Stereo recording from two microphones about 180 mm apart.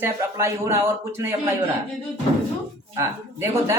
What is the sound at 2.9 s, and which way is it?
Speech, 15° right (ahead or behind).